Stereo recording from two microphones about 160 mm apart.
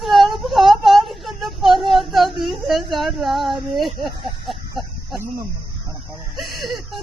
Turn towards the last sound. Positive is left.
turn(degrees=0)  # may be behind; listen again after turning